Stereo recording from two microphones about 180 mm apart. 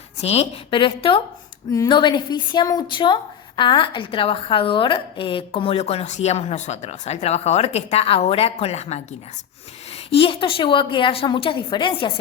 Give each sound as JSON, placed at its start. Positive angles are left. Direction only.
{"t": 0.2, "sound": "a woman's voice", "side_deg": 35}
{"t": 10.1, "sound": "a woman's voice", "side_deg": 30}